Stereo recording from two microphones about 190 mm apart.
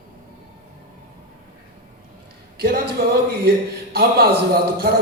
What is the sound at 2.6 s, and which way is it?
Speech, 50° right (ahead or behind).